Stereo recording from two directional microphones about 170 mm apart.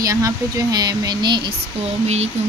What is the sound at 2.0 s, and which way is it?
Speech, 40° right (ahead or behind).